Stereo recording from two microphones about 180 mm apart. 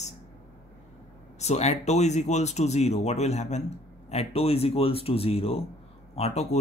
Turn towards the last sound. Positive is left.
turn(degrees=40)  # may be behind; listen again after turning